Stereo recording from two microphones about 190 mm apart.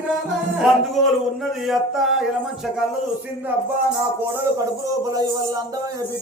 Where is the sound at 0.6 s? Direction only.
Centre (ahead or behind).